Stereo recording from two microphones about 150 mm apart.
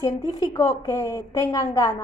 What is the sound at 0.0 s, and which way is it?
A woman's voice, 20° left (ahead or behind).